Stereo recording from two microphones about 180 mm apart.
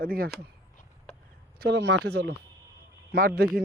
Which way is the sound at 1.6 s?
75° right (ahead or behind).